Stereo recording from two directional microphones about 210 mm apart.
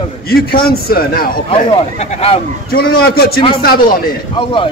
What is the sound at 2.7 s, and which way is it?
Speech, 45° left (ahead or behind).